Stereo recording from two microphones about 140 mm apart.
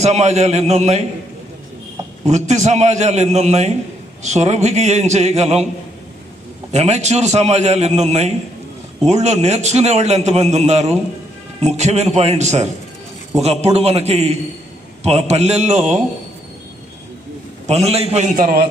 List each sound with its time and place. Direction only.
0.0 s a man's voice: 50° right (ahead or behind)
2.2 s a man's voice: 55° right (ahead or behind)
6.7 s a man's voice: 55° right (ahead or behind)
17.7 s a man's voice: 50° right (ahead or behind)
18.3 s a man's voice: 75° right (ahead or behind)